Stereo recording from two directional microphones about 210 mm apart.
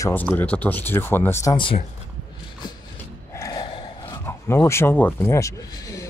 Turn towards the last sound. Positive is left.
turn(degrees=15)  # may be behind; listen again after turning